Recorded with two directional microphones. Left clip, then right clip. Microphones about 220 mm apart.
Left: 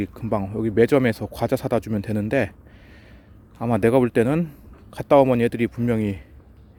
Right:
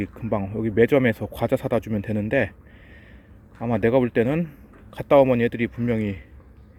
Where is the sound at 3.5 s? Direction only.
15° left (ahead or behind).